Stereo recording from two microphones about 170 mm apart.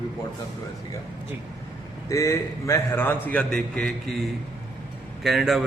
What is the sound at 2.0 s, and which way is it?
A man's voice, 20° left (ahead or behind).